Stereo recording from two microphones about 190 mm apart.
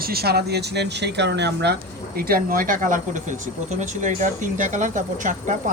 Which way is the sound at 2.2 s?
50° right (ahead or behind).